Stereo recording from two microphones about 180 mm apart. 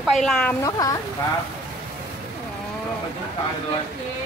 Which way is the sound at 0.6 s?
20° left (ahead or behind).